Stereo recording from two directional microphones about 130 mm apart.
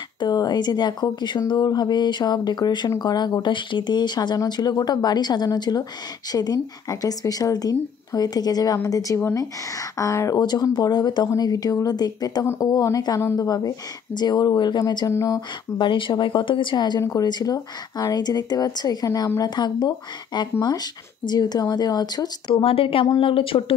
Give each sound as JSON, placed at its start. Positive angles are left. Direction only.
{"t": 0.2, "sound": "a woman's voice", "side_deg": 30}
{"t": 15.9, "sound": "speech", "side_deg": 40}
{"t": 22.6, "sound": "speech", "side_deg": 45}